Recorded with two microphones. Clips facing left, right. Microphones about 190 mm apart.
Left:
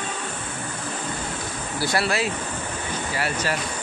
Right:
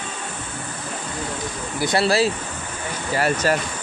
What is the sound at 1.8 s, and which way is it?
Speech, 20° right (ahead or behind).